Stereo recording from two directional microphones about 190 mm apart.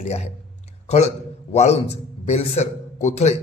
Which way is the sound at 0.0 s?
35° left (ahead or behind).